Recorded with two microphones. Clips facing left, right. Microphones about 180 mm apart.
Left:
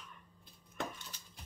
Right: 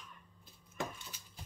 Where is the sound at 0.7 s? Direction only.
5° right (ahead or behind).